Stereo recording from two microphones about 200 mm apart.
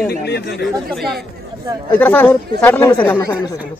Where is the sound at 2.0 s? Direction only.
10° left (ahead or behind).